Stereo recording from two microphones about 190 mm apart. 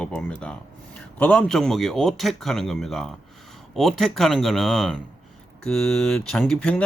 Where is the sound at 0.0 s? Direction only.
5° left (ahead or behind).